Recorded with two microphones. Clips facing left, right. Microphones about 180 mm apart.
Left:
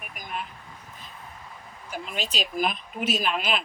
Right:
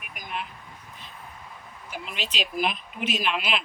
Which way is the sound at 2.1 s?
45° left (ahead or behind).